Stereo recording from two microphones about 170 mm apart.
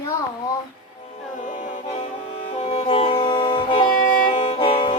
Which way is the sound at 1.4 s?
50° left (ahead or behind).